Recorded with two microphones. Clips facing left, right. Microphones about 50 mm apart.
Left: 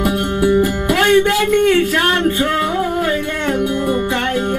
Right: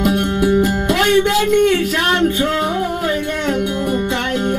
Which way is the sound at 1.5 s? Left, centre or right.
Centre.